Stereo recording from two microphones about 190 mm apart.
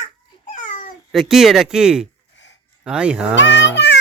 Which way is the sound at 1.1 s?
Centre (ahead or behind).